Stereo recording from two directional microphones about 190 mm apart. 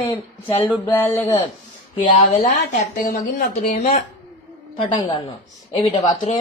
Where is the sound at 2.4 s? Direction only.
45° left (ahead or behind).